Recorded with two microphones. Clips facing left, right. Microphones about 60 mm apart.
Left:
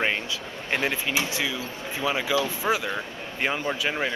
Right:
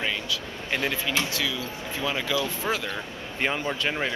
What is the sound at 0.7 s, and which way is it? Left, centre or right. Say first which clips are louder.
Speech: left 1 dB; centre.